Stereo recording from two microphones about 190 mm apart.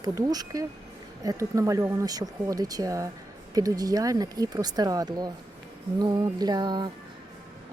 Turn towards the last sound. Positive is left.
turn(degrees=-20)  # may be behind; listen again after turning